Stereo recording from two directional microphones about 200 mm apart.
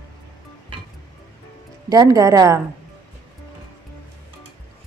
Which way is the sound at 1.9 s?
20° right (ahead or behind).